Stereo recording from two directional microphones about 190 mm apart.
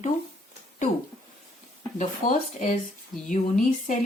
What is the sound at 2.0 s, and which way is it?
A woman's voice, 40° left (ahead or behind).